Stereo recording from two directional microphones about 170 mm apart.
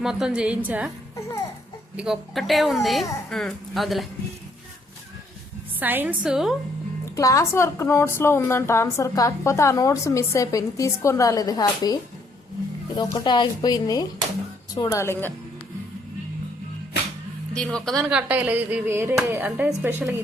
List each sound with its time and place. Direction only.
0.0 s speech: 5° right (ahead or behind)
2.0 s speech: centre (ahead or behind)
5.8 s speech: 10° right (ahead or behind)
7.0 s a woman's voice: 20° left (ahead or behind)
13.0 s a woman's voice: 20° left (ahead or behind)
17.5 s speech: 5° left (ahead or behind)
18.1 s speech: 10° right (ahead or behind)